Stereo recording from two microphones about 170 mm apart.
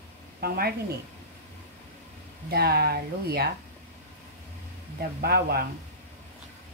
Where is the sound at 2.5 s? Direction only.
65° right (ahead or behind).